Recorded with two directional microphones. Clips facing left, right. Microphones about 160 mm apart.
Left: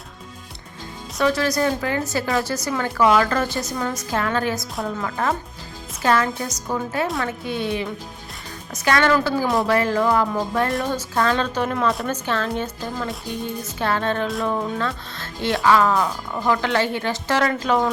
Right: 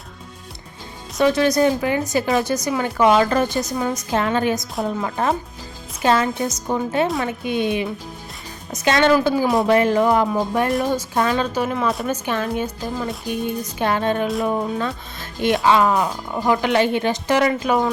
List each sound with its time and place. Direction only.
1.2 s speech: 20° right (ahead or behind)